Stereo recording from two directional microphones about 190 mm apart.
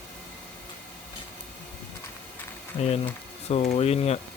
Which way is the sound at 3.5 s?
35° left (ahead or behind).